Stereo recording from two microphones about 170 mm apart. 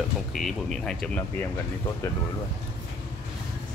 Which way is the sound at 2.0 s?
15° left (ahead or behind).